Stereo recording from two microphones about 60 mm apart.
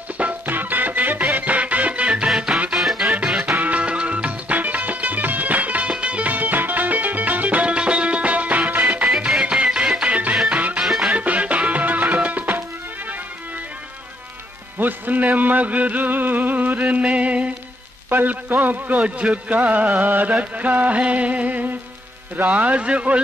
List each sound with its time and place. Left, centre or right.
0.2 s music: right; by 3.2 s centre
3.4 s music: right
9.0 s music: centre
10.0 s music: right
10.3 s music: centre
11.1 s music: right
14.8 s music: right
18.9 s music: centre